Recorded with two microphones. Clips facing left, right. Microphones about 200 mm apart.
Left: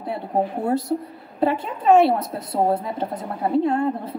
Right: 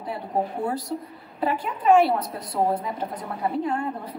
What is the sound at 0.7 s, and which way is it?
A woman's voice, 25° left (ahead or behind).